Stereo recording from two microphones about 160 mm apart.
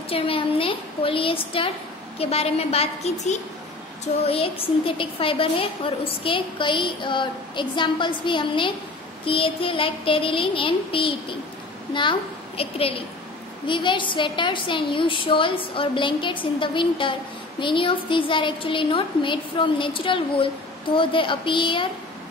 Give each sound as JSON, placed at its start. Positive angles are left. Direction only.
{"t": 0.1, "sound": "a woman's voice", "side_deg": 35}